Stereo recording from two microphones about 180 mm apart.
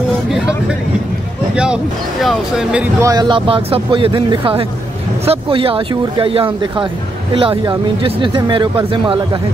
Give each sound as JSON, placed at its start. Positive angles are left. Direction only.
{"t": 1.5, "sound": "a sound", "side_deg": -5}
{"t": 2.2, "sound": "speech", "side_deg": 0}
{"t": 3.0, "sound": "speech", "side_deg": -20}